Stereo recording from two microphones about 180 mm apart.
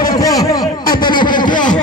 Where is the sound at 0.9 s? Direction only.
25° left (ahead or behind).